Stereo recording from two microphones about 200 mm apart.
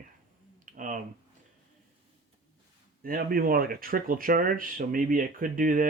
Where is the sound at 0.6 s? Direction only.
40° right (ahead or behind).